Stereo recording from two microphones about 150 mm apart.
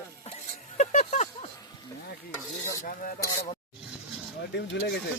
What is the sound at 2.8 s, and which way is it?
Speech, 70° left (ahead or behind).